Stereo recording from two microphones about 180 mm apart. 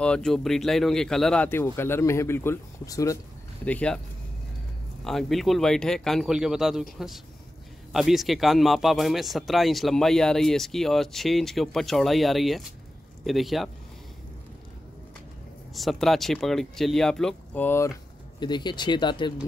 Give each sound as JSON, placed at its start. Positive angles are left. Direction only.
{"t": 0.0, "sound": "speech", "side_deg": 5}
{"t": 3.6, "sound": "speech", "side_deg": 5}
{"t": 5.0, "sound": "speech", "side_deg": 0}
{"t": 15.7, "sound": "speech", "side_deg": 0}
{"t": 18.4, "sound": "speech", "side_deg": 25}